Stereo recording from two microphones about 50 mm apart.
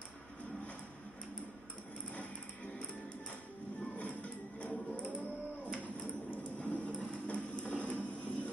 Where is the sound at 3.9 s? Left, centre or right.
Left.